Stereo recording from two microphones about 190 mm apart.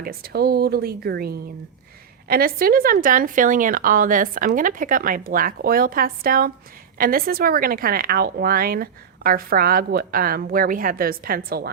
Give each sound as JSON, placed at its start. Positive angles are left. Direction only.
{"t": 0.0, "sound": "a woman's voice", "side_deg": -50}